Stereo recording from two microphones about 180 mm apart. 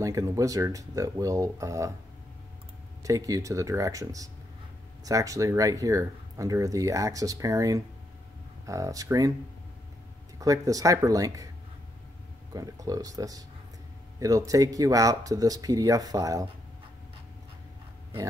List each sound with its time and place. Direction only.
0.0 s speech: 15° right (ahead or behind)
3.0 s speech: 20° right (ahead or behind)
10.4 s speech: 20° right (ahead or behind)
12.5 s speech: 20° right (ahead or behind)